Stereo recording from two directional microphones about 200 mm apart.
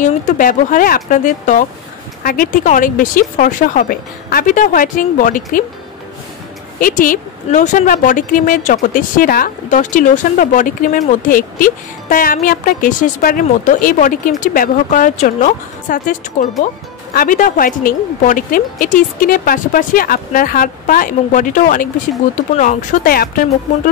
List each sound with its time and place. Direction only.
0.0 s speech: 40° left (ahead or behind)
6.8 s speech: 40° left (ahead or behind)